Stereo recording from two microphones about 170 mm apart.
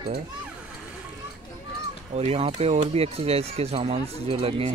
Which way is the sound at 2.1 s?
35° right (ahead or behind).